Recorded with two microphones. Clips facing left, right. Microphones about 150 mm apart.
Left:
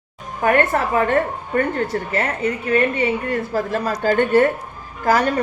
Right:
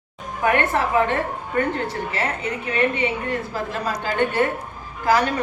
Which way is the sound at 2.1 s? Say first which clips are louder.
Left 4 dB; 45° left (ahead or behind).